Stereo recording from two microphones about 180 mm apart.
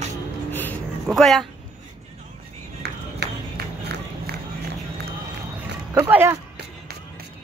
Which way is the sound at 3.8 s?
65° right (ahead or behind).